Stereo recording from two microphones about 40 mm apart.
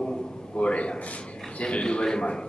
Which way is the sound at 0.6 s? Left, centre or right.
Left.